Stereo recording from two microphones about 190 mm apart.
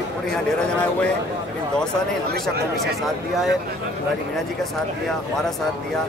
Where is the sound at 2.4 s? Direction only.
Centre (ahead or behind).